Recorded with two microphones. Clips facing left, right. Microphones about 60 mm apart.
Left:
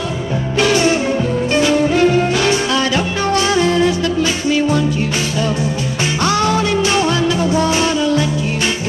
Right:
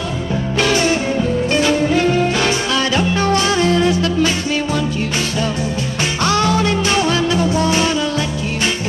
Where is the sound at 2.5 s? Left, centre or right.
Left.